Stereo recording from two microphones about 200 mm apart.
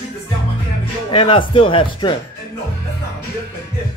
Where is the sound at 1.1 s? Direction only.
25° left (ahead or behind).